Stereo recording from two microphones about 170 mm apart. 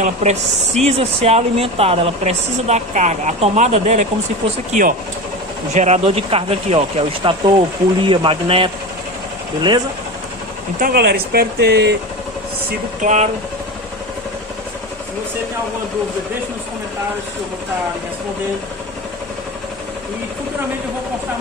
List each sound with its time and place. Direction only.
0.0 s speech: 40° right (ahead or behind)
5.7 s speech: 40° right (ahead or behind)
10.8 s speech: 65° right (ahead or behind)
13.0 s speech: 45° right (ahead or behind)